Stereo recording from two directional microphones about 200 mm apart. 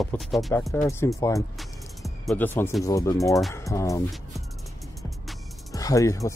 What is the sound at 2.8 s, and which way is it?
Speech, 15° left (ahead or behind).